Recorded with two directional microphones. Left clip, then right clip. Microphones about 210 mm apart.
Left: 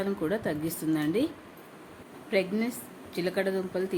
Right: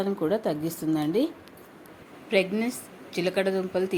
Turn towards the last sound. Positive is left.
turn(degrees=-10)  # may be behind; listen again after turning